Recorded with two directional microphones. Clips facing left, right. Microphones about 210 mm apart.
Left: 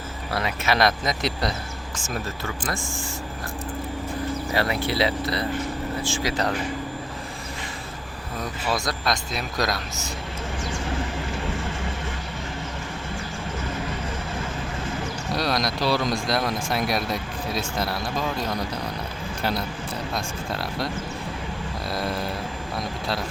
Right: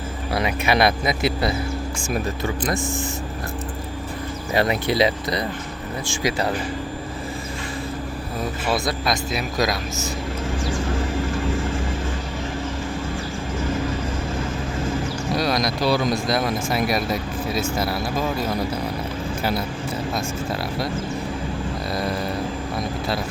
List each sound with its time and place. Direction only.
0.3 s speech: 15° right (ahead or behind)
4.5 s speech: 20° right (ahead or behind)
8.7 s speech: 5° right (ahead or behind)
15.3 s speech: centre (ahead or behind)
21.9 s speech: centre (ahead or behind)
22.8 s vehicle: centre (ahead or behind)